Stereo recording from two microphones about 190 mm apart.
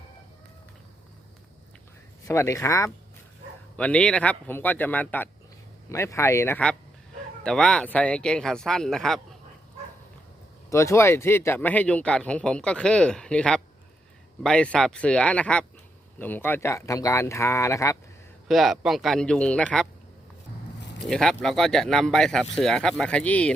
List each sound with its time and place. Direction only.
2.2 s speech: 15° left (ahead or behind)
10.7 s speech: 15° left (ahead or behind)
18.4 s speech: centre (ahead or behind)
21.0 s speech: 5° left (ahead or behind)